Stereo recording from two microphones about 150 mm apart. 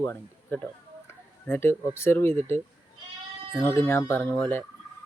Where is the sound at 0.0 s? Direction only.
15° left (ahead or behind).